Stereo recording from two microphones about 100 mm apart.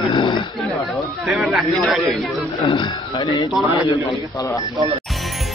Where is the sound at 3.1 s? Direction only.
35° left (ahead or behind).